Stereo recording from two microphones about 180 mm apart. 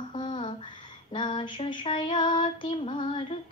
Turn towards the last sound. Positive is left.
turn(degrees=30)  # may be behind; listen again after turning